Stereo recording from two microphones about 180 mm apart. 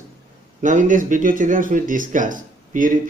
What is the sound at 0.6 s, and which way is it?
Speech, 45° right (ahead or behind).